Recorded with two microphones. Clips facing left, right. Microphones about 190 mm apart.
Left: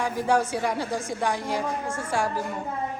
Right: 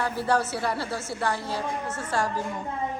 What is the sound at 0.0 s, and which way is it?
A woman's voice, 10° left (ahead or behind).